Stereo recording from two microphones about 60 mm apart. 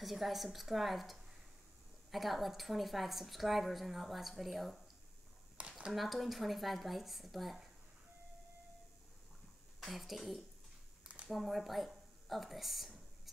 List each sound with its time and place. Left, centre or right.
0.0 s a woman's voice: centre
5.6 s a sound: centre
5.9 s a woman's voice: centre
9.8 s a woman's voice: centre